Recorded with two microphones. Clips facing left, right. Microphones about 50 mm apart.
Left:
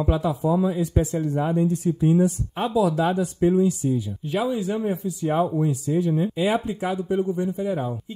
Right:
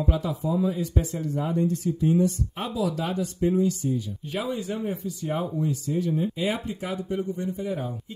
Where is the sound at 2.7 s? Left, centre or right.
Left.